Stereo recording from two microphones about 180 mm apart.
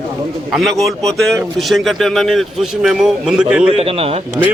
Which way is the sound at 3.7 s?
35° right (ahead or behind).